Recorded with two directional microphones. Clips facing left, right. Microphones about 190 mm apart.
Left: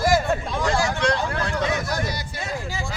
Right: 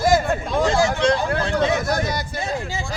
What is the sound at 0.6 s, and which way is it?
Speech, 25° right (ahead or behind).